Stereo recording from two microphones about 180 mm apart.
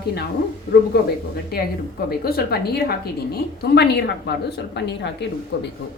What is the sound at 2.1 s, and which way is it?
A woman's voice, 60° left (ahead or behind).